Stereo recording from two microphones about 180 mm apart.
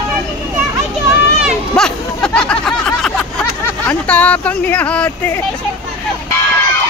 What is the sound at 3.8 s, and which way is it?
Speech, 10° left (ahead or behind).